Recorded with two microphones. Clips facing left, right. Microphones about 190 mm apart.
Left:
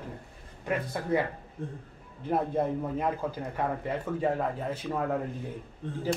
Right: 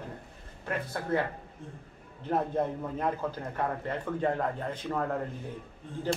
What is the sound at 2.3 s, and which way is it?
A man's voice, 10° left (ahead or behind).